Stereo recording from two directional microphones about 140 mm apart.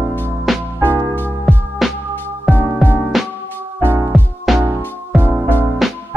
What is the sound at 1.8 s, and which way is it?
Music, centre (ahead or behind).